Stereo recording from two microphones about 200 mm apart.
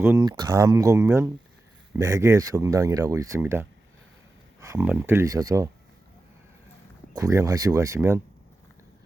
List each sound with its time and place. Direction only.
0.0 s speech: 15° right (ahead or behind)
7.1 s speech: 15° right (ahead or behind)